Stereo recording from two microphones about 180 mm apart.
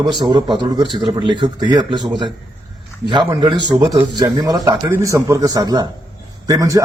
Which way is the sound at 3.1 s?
25° right (ahead or behind).